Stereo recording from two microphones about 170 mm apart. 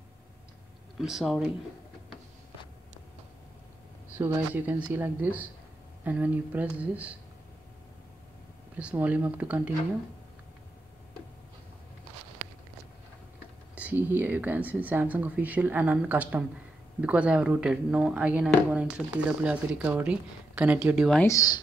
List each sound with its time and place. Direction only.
0.9 s speech: centre (ahead or behind)
4.2 s speech: 10° right (ahead or behind)
8.7 s speech: 10° right (ahead or behind)
13.7 s speech: 10° right (ahead or behind)
21.2 s speech: 20° left (ahead or behind)